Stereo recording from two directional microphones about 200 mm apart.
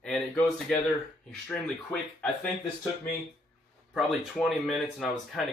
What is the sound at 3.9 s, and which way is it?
Speech, 5° right (ahead or behind).